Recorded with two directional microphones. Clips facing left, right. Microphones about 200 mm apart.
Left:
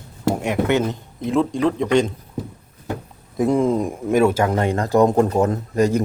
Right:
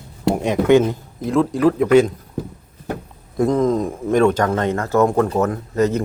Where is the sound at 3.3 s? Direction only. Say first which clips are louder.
Right 1 dB; 10° left (ahead or behind).